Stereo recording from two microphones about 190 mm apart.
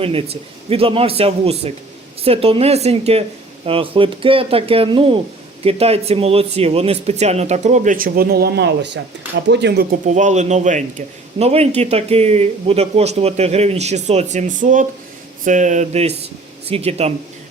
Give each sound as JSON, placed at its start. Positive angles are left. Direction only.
{"t": 0.0, "sound": "a man's voice", "side_deg": -30}
{"t": 9.9, "sound": "a man's voice", "side_deg": -40}